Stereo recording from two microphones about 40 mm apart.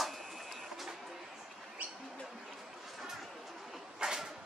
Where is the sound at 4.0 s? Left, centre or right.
Centre.